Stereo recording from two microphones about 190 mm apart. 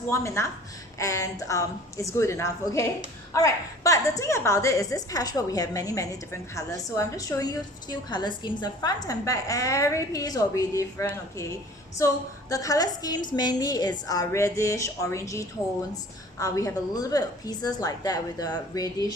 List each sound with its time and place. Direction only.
0.1 s a woman's voice: 15° left (ahead or behind)